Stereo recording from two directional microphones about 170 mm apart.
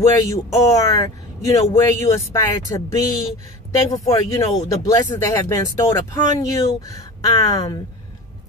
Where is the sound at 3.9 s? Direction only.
20° left (ahead or behind).